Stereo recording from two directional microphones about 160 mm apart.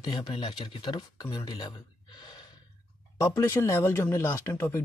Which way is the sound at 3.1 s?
20° left (ahead or behind).